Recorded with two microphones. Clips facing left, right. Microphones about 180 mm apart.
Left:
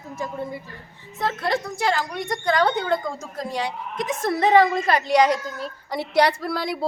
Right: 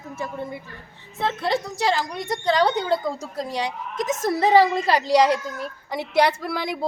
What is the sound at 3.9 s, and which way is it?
Speech, 45° right (ahead or behind).